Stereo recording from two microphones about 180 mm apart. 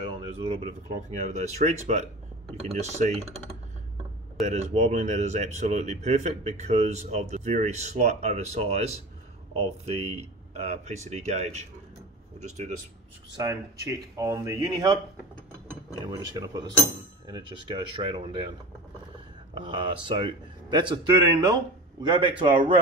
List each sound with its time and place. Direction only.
0.0 s speech: 35° right (ahead or behind)
4.5 s speech: 40° right (ahead or behind)
13.4 s speech: 20° right (ahead or behind)
16.1 s speech: 20° right (ahead or behind)
19.5 s speech: 25° right (ahead or behind)